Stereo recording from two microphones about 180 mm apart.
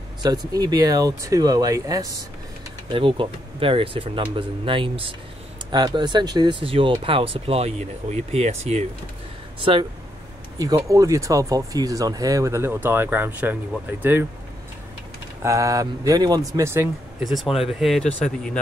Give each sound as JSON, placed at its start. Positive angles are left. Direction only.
{"t": 0.2, "sound": "speech", "side_deg": -20}
{"t": 10.6, "sound": "speech", "side_deg": -20}
{"t": 15.4, "sound": "speech", "side_deg": -20}
{"t": 17.2, "sound": "speech", "side_deg": 0}